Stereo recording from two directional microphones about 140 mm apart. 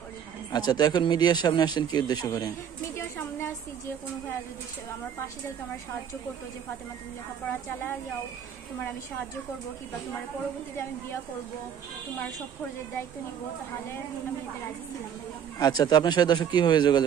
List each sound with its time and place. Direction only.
0.5 s speech: 30° left (ahead or behind)
3.2 s a sound: 15° left (ahead or behind)
15.6 s speech: 25° left (ahead or behind)